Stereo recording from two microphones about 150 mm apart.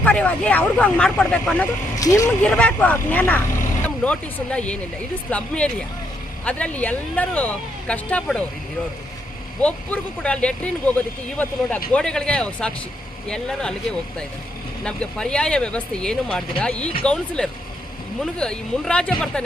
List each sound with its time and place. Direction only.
0.0 s speech: 10° left (ahead or behind)
2.0 s speech: 20° left (ahead or behind)
2.4 s speech: 10° left (ahead or behind)
9.6 s speech: 10° left (ahead or behind)
14.8 s speech: 5° left (ahead or behind)